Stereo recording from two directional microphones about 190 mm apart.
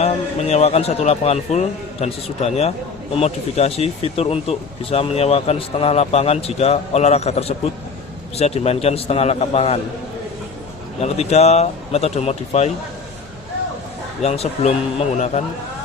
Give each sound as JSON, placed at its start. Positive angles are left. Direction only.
{"t": 0.0, "sound": "speech", "side_deg": 35}
{"t": 11.0, "sound": "speech", "side_deg": 35}
{"t": 14.2, "sound": "speech", "side_deg": 35}